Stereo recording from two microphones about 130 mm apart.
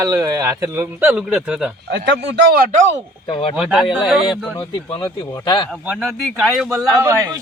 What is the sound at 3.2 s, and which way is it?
Speech, 40° left (ahead or behind).